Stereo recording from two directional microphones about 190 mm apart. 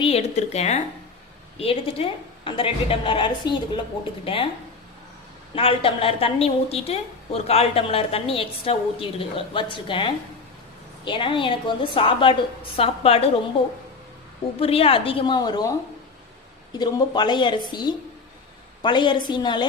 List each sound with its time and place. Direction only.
0.0 s a woman's voice: 35° left (ahead or behind)
5.5 s a woman's voice: 30° left (ahead or behind)
14.6 s a woman's voice: 30° left (ahead or behind)
16.7 s a woman's voice: 25° left (ahead or behind)